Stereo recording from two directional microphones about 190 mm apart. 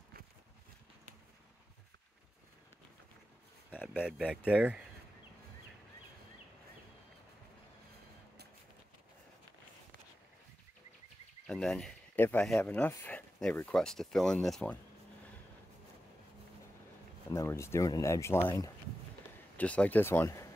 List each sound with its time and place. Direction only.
4.5 s speech: 5° right (ahead or behind)
11.4 s speech: 5° left (ahead or behind)
17.3 s speech: 15° left (ahead or behind)